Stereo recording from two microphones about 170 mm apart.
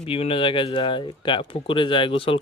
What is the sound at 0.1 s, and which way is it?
Speech, 30° left (ahead or behind).